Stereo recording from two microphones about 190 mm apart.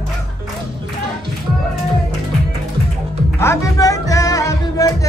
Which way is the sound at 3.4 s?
15° left (ahead or behind).